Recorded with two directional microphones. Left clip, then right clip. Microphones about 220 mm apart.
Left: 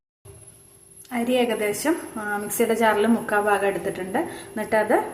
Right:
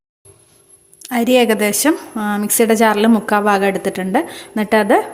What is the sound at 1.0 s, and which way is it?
A woman's voice, 45° right (ahead or behind).